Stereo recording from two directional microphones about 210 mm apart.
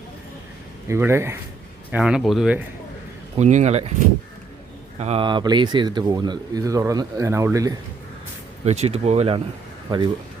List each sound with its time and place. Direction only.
0.9 s speech: 10° right (ahead or behind)
3.3 s speech: 35° right (ahead or behind)
4.9 s speech: 30° right (ahead or behind)
8.6 s speech: 30° right (ahead or behind)